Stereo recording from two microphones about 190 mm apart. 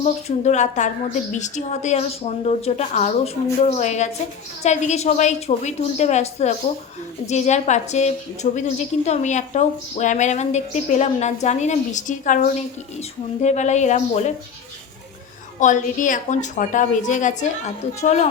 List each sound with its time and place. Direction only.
0.0 s a woman's voice: 35° left (ahead or behind)
15.6 s a woman's voice: 40° left (ahead or behind)